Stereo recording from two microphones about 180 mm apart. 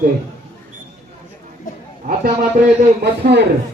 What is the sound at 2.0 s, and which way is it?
Speech, 50° right (ahead or behind).